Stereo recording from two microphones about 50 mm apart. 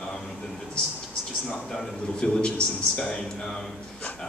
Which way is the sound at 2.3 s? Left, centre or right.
Centre.